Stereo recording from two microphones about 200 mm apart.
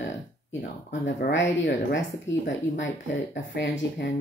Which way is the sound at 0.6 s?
55° left (ahead or behind).